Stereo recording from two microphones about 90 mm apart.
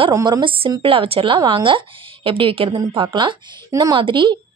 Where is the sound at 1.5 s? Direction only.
70° right (ahead or behind); by 2.8 s 90° right.